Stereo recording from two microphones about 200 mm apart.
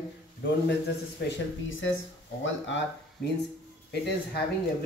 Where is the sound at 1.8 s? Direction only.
70° left (ahead or behind).